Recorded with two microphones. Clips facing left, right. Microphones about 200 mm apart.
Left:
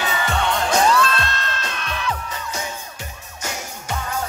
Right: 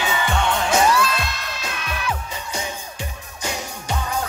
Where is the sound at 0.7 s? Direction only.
10° right (ahead or behind).